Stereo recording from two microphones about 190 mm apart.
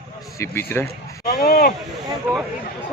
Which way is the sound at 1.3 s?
50° left (ahead or behind).